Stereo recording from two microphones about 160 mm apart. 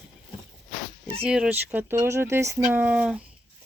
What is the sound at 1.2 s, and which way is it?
Speech, 5° right (ahead or behind).